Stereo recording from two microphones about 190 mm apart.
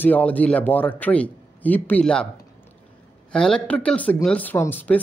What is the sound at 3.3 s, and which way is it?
Speech, 5° left (ahead or behind).